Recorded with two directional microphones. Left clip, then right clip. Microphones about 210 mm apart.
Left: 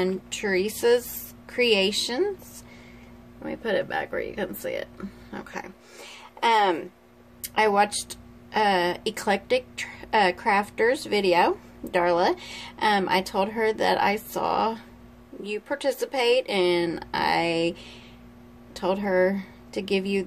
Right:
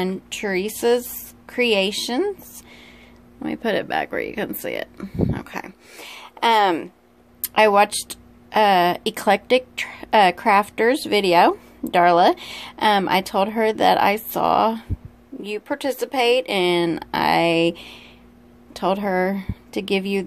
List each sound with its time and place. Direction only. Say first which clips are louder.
0.0 s speech: right 1 dB; 30° right (ahead or behind)
3.4 s speech: right 4 dB; 40° right (ahead or behind)